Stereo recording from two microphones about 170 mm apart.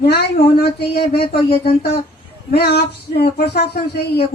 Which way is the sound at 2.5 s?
65° left (ahead or behind).